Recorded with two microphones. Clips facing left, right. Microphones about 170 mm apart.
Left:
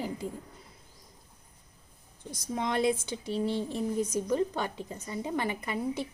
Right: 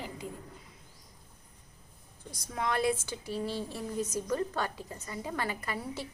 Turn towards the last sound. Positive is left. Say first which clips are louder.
# left 5 dB
turn(degrees=20)  # may be behind; listen again after turning